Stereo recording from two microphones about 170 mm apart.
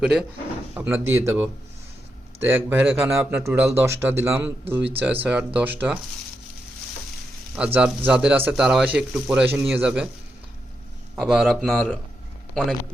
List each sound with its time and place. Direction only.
0.0 s a man's voice: 5° right (ahead or behind)
7.5 s speech: 5° right (ahead or behind)
11.2 s a man's voice: centre (ahead or behind)